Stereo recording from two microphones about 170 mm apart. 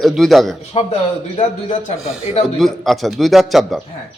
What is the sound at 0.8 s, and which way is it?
Speech, 35° left (ahead or behind).